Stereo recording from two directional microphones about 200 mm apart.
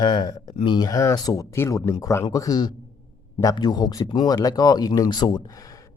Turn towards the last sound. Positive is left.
turn(degrees=20)  # may be behind; listen again after turning